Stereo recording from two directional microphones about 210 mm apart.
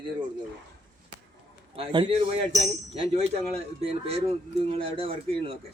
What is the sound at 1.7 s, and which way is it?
Speech, 25° right (ahead or behind).